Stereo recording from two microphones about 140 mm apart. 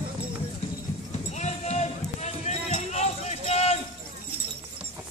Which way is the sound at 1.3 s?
55° left (ahead or behind).